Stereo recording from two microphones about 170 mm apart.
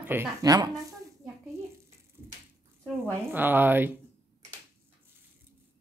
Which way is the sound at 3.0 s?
10° right (ahead or behind).